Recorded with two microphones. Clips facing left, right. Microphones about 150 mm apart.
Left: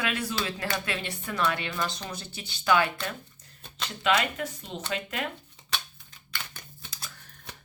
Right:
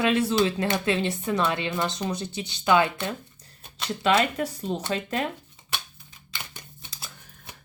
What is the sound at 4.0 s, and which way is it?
Speech, 35° right (ahead or behind).